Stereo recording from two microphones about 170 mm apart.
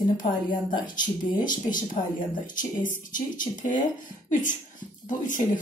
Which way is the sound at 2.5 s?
50° left (ahead or behind).